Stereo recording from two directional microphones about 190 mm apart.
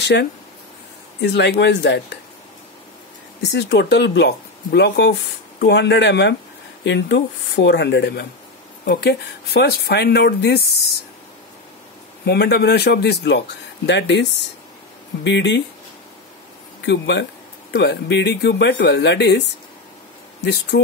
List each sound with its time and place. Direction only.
0.0 s speech: 65° left (ahead or behind)
3.4 s speech: 65° left (ahead or behind)
12.3 s speech: 60° left (ahead or behind)
16.8 s speech: 65° left (ahead or behind)
20.4 s speech: 65° left (ahead or behind)